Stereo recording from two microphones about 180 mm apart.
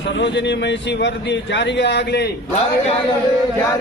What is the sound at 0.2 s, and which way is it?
A man's voice, 75° left (ahead or behind).